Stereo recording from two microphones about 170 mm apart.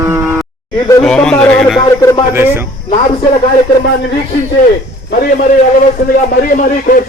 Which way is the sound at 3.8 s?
85° left.